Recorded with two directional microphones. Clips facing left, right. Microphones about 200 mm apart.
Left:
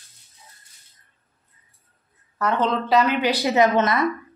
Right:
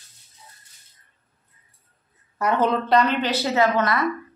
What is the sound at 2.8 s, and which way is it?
A woman's voice, 5° left (ahead or behind).